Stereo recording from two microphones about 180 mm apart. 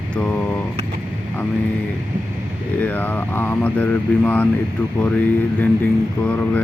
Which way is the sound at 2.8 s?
10° left (ahead or behind).